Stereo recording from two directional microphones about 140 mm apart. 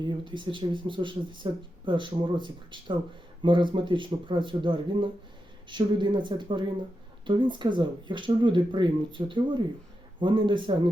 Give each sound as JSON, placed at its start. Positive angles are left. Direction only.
{"t": 0.0, "sound": "speech", "side_deg": -35}